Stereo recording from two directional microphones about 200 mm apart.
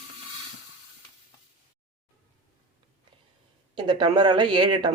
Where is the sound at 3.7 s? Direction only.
20° right (ahead or behind).